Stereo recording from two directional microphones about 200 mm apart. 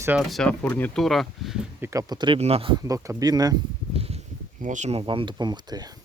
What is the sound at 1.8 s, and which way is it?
Speech, 15° right (ahead or behind).